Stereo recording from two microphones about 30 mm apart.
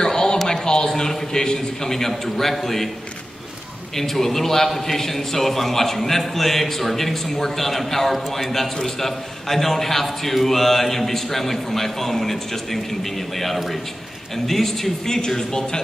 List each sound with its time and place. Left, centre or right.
0.0 s a sound: left
0.5 s a man's voice: left; by 2.9 s centre
3.9 s a man's voice: centre